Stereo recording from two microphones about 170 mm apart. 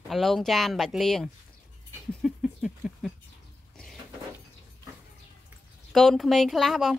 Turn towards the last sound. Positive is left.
turn(degrees=0)  # may be behind; listen again after turning